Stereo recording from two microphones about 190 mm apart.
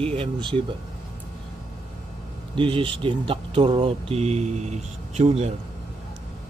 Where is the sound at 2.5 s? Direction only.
25° right (ahead or behind).